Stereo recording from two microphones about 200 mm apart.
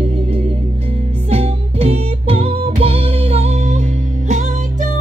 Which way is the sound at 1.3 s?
30° right (ahead or behind).